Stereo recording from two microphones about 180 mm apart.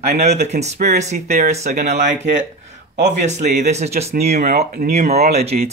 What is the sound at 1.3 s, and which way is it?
Speech, 55° right (ahead or behind).